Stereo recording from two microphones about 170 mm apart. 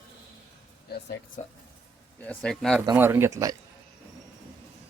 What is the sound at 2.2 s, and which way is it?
Speech, 5° left (ahead or behind).